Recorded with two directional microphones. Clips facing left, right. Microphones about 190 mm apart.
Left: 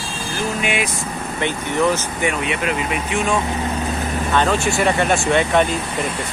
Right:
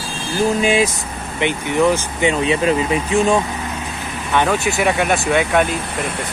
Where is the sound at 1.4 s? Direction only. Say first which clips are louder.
Right 3 dB; 15° right (ahead or behind).